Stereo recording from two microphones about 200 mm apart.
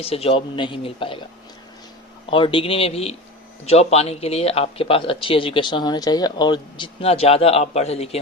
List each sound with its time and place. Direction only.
0.0 s speech: 30° left (ahead or behind)
2.3 s speech: 25° left (ahead or behind)